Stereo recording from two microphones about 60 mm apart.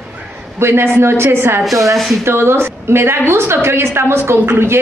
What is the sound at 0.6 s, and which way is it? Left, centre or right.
A woman's voice, right.